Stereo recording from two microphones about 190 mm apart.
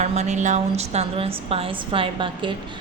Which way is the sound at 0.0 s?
35° right (ahead or behind).